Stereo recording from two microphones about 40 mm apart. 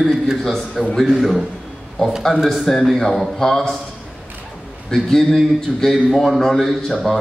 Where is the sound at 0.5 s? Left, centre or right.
Centre.